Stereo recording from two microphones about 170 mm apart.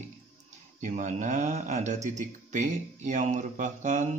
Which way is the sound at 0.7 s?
45° right (ahead or behind).